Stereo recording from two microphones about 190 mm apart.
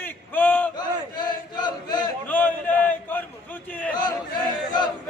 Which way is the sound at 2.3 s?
10° left (ahead or behind).